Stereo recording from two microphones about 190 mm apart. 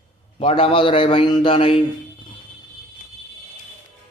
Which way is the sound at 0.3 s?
30° left (ahead or behind).